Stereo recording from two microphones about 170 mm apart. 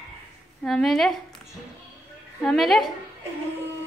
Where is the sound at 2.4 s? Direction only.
Centre (ahead or behind).